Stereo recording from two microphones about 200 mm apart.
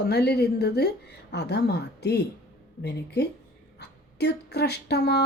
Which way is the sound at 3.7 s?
55° left (ahead or behind).